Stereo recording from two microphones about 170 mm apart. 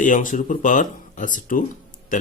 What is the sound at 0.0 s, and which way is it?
Speech, 50° left (ahead or behind).